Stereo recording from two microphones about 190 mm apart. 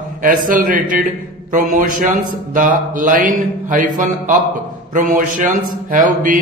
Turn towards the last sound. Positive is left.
turn(degrees=-45)  # may be behind; listen again after turning